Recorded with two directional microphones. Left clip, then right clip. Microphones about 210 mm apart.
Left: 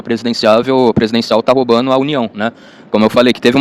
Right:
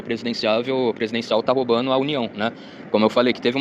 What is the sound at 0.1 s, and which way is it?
Speech, 50° left (ahead or behind).